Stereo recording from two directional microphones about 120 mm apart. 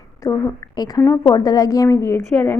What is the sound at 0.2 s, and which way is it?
A woman's voice, 25° left (ahead or behind).